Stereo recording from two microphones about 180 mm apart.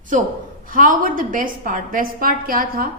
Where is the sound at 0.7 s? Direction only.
50° right (ahead or behind).